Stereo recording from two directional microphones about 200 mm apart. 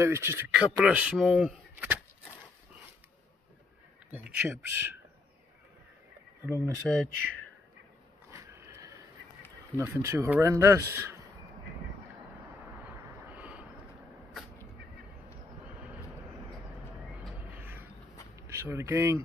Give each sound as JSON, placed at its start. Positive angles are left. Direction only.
{"t": 0.0, "sound": "a man's voice", "side_deg": -15}
{"t": 4.1, "sound": "a man's voice", "side_deg": -5}
{"t": 6.4, "sound": "a man's voice", "side_deg": -10}
{"t": 8.3, "sound": "a sound", "side_deg": -15}
{"t": 9.8, "sound": "a man's voice", "side_deg": -10}
{"t": 12.8, "sound": "vehicle", "side_deg": -5}
{"t": 17.5, "sound": "a sound", "side_deg": -10}
{"t": 18.5, "sound": "speech", "side_deg": -15}